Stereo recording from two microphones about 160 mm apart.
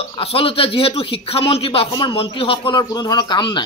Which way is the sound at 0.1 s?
35° left (ahead or behind).